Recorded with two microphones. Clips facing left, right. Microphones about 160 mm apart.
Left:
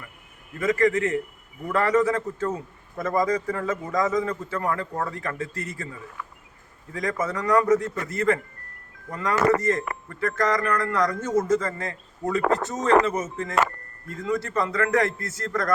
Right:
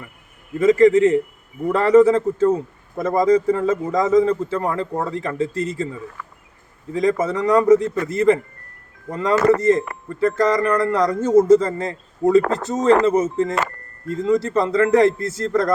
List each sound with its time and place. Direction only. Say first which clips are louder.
0.6 s a man's voice: right 9 dB; 30° right (ahead or behind)
6.9 s a man's voice: right 8 dB; 25° right (ahead or behind)